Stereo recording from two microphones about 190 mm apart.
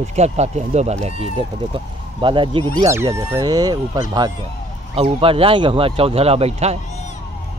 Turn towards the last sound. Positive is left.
turn(degrees=-35)  # may be behind; listen again after turning